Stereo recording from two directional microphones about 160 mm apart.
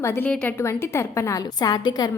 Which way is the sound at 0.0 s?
15° left (ahead or behind).